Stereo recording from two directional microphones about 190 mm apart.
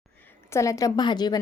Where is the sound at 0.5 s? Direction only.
15° left (ahead or behind).